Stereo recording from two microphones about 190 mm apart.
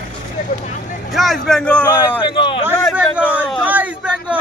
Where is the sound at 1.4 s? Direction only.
5° left (ahead or behind).